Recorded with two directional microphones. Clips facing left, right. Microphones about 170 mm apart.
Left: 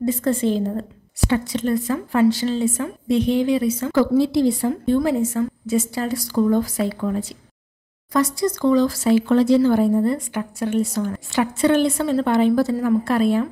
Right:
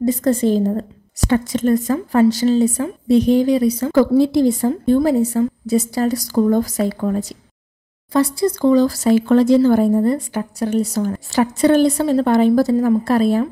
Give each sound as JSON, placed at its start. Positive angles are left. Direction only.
{"t": 0.0, "sound": "a woman's voice", "side_deg": -40}
{"t": 8.1, "sound": "a woman's voice", "side_deg": -30}